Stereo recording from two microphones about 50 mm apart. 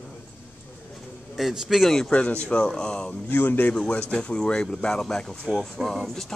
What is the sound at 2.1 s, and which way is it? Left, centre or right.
A man's voice, left.